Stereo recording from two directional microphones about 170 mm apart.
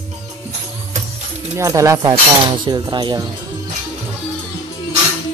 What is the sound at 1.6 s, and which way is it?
Speech, 20° right (ahead or behind).